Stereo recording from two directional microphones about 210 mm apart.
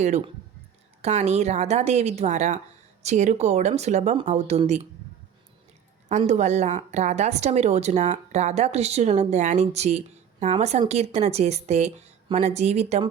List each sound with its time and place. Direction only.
1.0 s speech: 30° right (ahead or behind)
6.1 s speech: 35° right (ahead or behind)